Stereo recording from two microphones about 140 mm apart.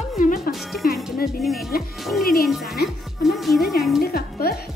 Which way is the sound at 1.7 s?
90° left.